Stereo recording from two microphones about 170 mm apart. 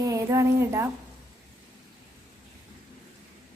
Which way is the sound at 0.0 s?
20° right (ahead or behind).